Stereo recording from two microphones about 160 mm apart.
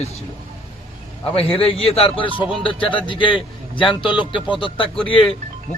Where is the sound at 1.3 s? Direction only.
35° left (ahead or behind).